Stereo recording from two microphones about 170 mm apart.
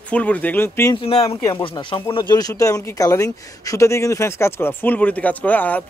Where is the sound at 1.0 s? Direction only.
35° left (ahead or behind).